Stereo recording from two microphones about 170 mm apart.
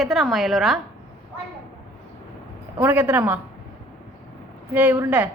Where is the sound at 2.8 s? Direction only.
10° right (ahead or behind).